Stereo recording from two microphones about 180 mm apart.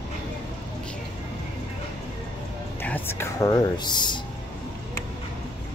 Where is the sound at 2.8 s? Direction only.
10° left (ahead or behind).